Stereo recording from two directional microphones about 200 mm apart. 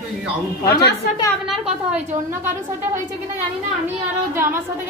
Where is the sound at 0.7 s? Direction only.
55° left (ahead or behind).